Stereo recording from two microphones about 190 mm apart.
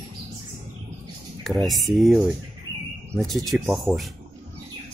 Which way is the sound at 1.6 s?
Centre (ahead or behind).